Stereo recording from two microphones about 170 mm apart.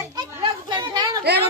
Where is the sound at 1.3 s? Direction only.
75° right (ahead or behind).